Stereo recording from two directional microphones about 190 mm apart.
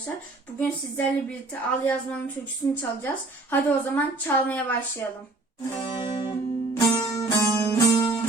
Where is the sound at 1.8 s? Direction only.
10° left (ahead or behind).